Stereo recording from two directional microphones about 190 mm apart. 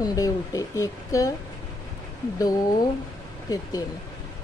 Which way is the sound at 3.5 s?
20° left (ahead or behind).